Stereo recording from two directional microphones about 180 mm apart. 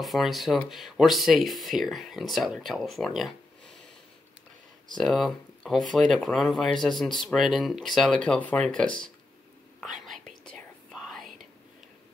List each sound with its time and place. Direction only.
0.0 s speech: centre (ahead or behind)
4.9 s speech: centre (ahead or behind)
9.8 s whispering: centre (ahead or behind)